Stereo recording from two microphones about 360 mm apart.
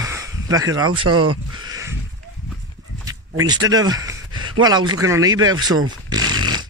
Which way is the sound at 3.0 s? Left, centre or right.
Centre.